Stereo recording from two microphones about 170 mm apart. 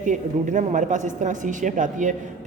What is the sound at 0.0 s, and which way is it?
Speech, 50° right (ahead or behind).